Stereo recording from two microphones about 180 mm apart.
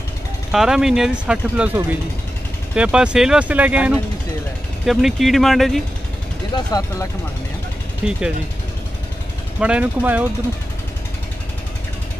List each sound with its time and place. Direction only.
0.5 s speech: 5° right (ahead or behind)
6.5 s speech: 20° left (ahead or behind)
8.0 s speech: 5° right (ahead or behind)
9.6 s speech: 5° right (ahead or behind)